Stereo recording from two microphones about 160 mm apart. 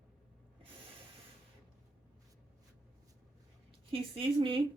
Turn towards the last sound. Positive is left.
turn(degrees=-35)  # may be behind; listen again after turning